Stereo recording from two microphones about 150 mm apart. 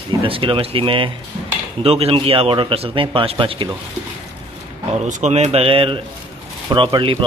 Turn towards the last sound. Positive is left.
turn(degrees=-35)  # may be behind; listen again after turning